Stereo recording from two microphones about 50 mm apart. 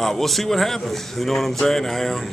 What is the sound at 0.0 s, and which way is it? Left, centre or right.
Speech, centre.